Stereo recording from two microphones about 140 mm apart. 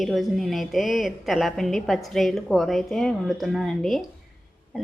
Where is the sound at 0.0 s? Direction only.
Centre (ahead or behind).